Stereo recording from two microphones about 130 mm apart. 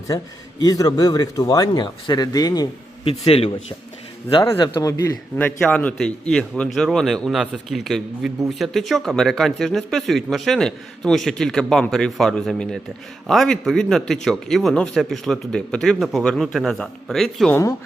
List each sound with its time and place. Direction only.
0.6 s a man's voice: 30° left (ahead or behind)
3.0 s a man's voice: 50° left (ahead or behind)
4.5 s a man's voice: 35° left (ahead or behind)
5.4 s a man's voice: 15° left (ahead or behind)
17.5 s a man's voice: 25° left (ahead or behind)